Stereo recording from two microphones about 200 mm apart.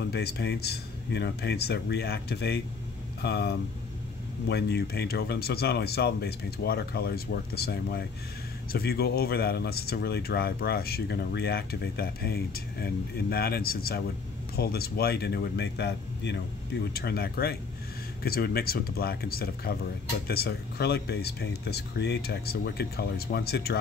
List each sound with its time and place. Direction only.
0.0 s speech: 55° left (ahead or behind)